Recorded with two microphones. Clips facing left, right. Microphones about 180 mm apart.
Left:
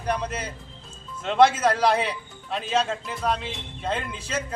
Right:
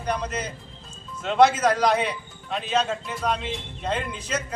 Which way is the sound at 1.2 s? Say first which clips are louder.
Even; 5° right (ahead or behind).